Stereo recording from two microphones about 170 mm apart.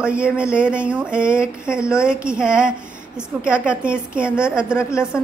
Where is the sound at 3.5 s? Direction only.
5° right (ahead or behind).